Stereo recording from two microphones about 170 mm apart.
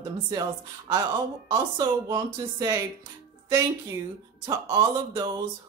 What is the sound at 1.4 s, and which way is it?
Speech, 25° right (ahead or behind).